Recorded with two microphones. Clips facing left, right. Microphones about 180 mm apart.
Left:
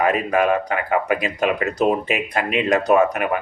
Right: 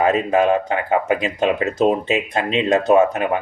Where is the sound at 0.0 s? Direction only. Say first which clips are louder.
Right 2 dB; 25° right (ahead or behind).